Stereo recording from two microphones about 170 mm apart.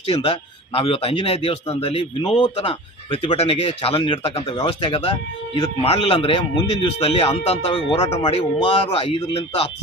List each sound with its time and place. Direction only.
0.0 s speech: 35° left (ahead or behind)